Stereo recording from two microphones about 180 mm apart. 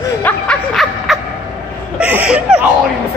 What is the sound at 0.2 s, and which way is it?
Music, 5° left (ahead or behind).